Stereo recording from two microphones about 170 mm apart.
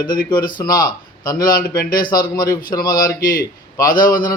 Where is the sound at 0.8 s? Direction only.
25° left (ahead or behind).